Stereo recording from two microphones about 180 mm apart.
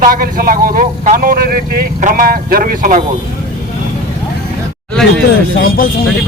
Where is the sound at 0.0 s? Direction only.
50° right (ahead or behind).